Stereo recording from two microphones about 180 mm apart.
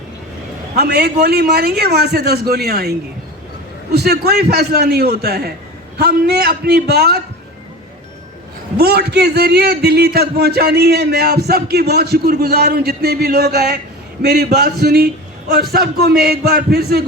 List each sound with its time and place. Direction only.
0.8 s a man's voice: 65° right (ahead or behind)
3.9 s a man's voice: 65° right (ahead or behind)
8.8 s a man's voice: 60° right (ahead or behind)